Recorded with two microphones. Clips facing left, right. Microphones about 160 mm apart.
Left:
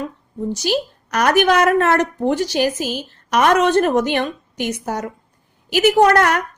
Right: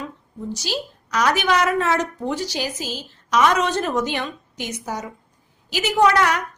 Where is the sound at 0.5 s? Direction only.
60° left (ahead or behind).